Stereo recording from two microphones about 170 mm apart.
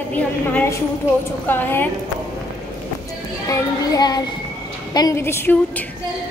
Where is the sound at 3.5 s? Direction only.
25° left (ahead or behind).